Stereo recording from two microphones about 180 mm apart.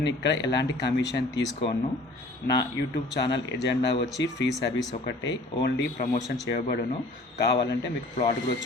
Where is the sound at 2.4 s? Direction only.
60° left (ahead or behind).